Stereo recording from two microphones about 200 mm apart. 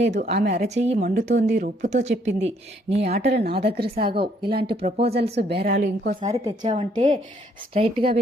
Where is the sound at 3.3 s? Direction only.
50° right (ahead or behind).